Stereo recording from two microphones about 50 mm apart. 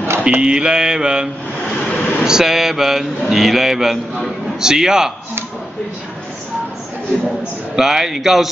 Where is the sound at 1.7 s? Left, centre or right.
Centre.